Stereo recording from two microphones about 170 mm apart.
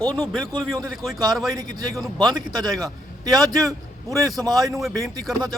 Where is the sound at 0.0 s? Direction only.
10° left (ahead or behind).